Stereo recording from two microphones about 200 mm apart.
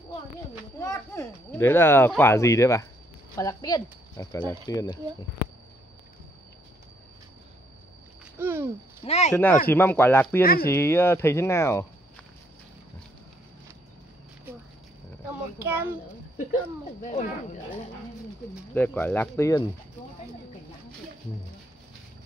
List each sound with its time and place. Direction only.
0.7 s speech: 15° left (ahead or behind)
8.4 s a sound: 10° right (ahead or behind)
9.0 s speech: 30° left (ahead or behind)
9.3 s speech: 10° left (ahead or behind)
10.4 s speech: 50° left (ahead or behind)
10.7 s speech: 10° left (ahead or behind)
15.6 s a child's voice: 10° right (ahead or behind)
17.0 s speech: 35° left (ahead or behind)
18.8 s speech: 10° left (ahead or behind)